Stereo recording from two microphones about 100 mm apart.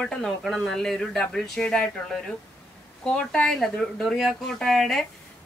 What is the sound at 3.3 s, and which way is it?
Speech, 5° left (ahead or behind).